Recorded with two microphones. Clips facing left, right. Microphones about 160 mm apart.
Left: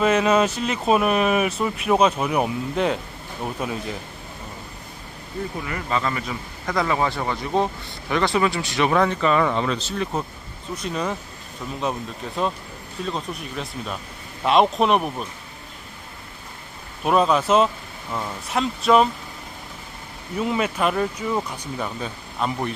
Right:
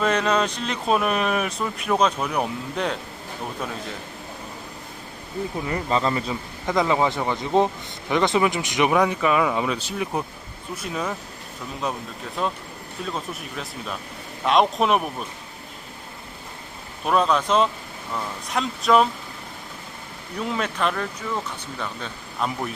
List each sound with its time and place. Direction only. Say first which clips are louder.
0.0 s speech: left 3 dB; 5° left (ahead or behind)
5.6 s speech: right 3 dB; 30° right (ahead or behind); by 15.1 s centre (ahead or behind)
17.0 s speech: left 2 dB; 5° left (ahead or behind)
20.3 s speech: left 4 dB; 5° left (ahead or behind)
22.4 s speech: left 2 dB; centre (ahead or behind)